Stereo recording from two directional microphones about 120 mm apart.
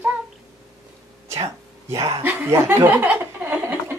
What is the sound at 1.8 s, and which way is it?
Speech, 25° right (ahead or behind).